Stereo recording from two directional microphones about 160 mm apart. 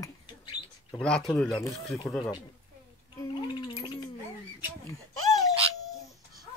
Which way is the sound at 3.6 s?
35° left (ahead or behind).